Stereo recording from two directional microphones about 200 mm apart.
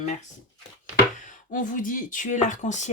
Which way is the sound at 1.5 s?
40° left (ahead or behind).